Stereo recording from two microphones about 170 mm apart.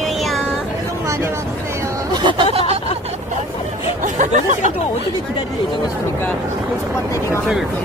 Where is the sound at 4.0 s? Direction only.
45° right (ahead or behind).